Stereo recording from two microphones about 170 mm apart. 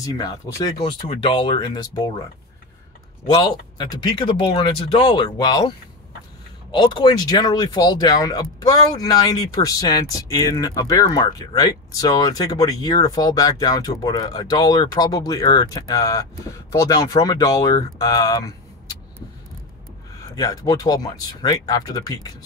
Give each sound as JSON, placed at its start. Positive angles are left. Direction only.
{"t": 0.0, "sound": "speech", "side_deg": 20}
{"t": 1.0, "sound": "speech", "side_deg": 35}
{"t": 3.3, "sound": "speech", "side_deg": 25}
{"t": 6.7, "sound": "speech", "side_deg": 25}
{"t": 20.3, "sound": "speech", "side_deg": 20}